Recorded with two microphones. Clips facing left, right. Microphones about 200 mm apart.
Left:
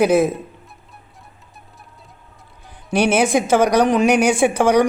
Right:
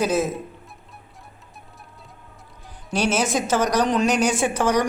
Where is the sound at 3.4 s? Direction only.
10° left (ahead or behind).